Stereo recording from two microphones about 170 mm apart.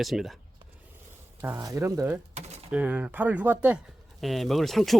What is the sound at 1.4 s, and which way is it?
A man's voice, 15° right (ahead or behind).